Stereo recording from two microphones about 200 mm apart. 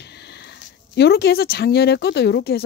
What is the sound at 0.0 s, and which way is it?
Speech, 55° left (ahead or behind).